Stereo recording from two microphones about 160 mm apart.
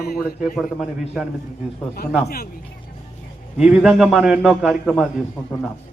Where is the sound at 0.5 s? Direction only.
Centre (ahead or behind).